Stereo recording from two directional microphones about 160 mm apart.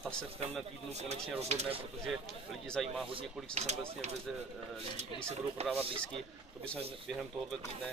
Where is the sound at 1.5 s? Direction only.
40° right (ahead or behind).